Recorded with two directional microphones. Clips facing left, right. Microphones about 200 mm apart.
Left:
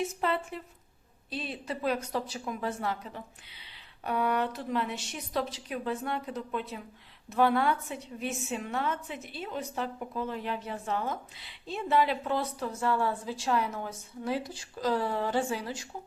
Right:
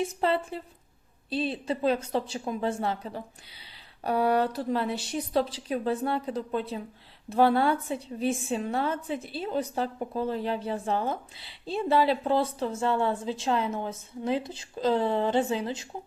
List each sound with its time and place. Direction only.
0.0 s a woman's voice: 30° right (ahead or behind)